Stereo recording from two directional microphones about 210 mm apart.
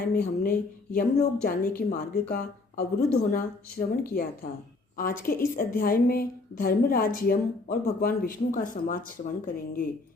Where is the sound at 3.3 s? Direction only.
45° left (ahead or behind).